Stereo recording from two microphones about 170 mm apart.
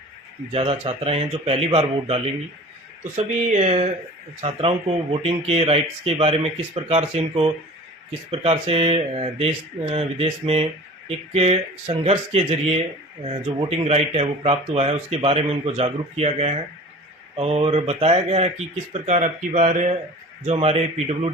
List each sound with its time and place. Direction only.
0.5 s speech: 35° right (ahead or behind)